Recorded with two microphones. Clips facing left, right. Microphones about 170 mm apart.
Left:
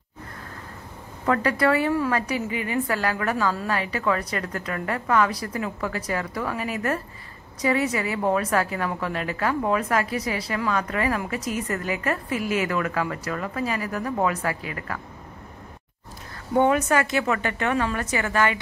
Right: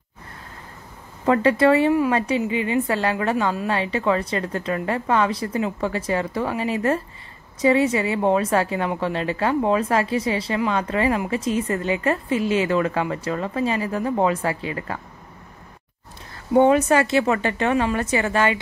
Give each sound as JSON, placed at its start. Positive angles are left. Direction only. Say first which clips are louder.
{"t": 1.2, "sound": "a woman's voice", "louder": "right 5 dB", "side_deg": -25}
{"t": 16.5, "sound": "a woman's voice", "louder": "right 4 dB", "side_deg": -25}